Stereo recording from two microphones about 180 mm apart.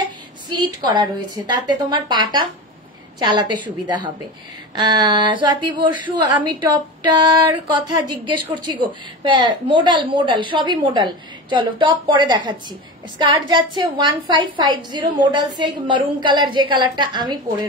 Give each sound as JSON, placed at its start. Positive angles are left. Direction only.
{"t": 0.5, "sound": "speech", "side_deg": -25}